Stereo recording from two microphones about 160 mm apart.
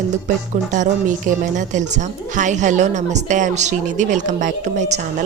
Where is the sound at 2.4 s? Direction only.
50° right (ahead or behind).